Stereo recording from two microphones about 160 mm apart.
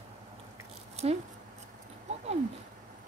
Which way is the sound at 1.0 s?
40° right (ahead or behind).